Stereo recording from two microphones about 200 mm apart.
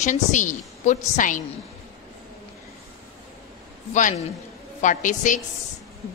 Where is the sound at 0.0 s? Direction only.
40° left (ahead or behind).